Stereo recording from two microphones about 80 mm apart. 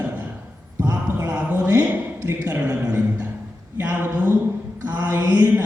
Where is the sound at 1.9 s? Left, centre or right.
Right.